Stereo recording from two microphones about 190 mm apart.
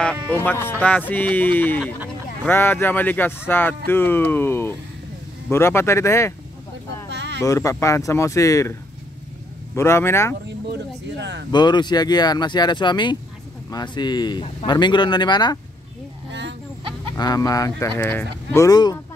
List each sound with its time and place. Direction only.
0.3 s speech: 10° left (ahead or behind)
7.1 s a sound: 65° right (ahead or behind)
7.4 s speech: 15° left (ahead or behind)
9.8 s speech: 15° left (ahead or behind)
10.7 s speech: 65° right (ahead or behind)
11.5 s a man's voice: 25° left (ahead or behind)
16.3 s a sound: 65° right (ahead or behind)
17.2 s speech: 20° left (ahead or behind)